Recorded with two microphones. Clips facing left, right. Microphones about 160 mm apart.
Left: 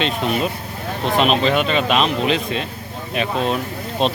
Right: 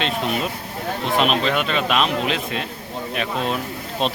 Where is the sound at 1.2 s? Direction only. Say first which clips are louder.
Left 4 dB; centre (ahead or behind).